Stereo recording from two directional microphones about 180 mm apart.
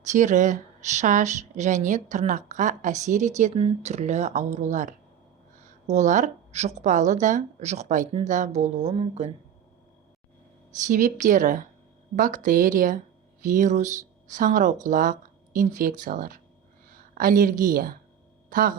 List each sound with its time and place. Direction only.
0.0 s a woman's voice: 40° right (ahead or behind)
10.8 s a woman's voice: 45° right (ahead or behind)